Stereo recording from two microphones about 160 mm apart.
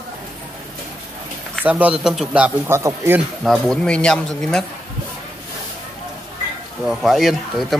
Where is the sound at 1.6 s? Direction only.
10° right (ahead or behind).